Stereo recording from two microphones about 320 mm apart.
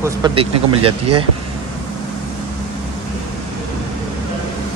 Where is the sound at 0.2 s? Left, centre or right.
Centre.